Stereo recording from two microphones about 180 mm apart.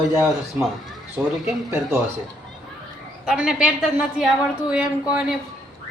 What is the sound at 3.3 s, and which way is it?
A woman's voice, 5° right (ahead or behind).